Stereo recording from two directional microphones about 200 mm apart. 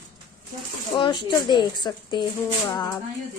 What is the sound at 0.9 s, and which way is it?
A woman's voice, 20° left (ahead or behind).